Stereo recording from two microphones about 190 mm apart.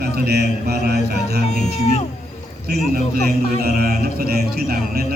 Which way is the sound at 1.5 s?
35° left (ahead or behind).